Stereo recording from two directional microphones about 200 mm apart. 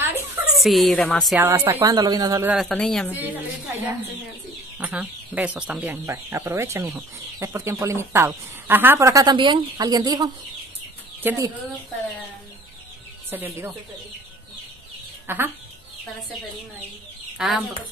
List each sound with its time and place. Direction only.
0.0 s a sound: centre (ahead or behind)
1.4 s speech: 10° right (ahead or behind)
2.5 s speech: centre (ahead or behind)
4.7 s speech: 5° right (ahead or behind)
13.3 s speech: 10° right (ahead or behind)
15.2 s speech: 10° right (ahead or behind)
17.4 s speech: centre (ahead or behind)